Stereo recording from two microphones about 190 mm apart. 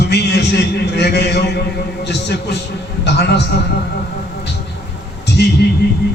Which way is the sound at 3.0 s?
60° left (ahead or behind).